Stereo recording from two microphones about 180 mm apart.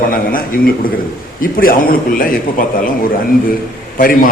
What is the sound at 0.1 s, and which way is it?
A man's voice, 50° left (ahead or behind).